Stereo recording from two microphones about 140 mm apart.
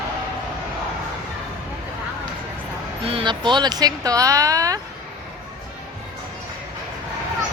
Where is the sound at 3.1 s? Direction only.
35° right (ahead or behind).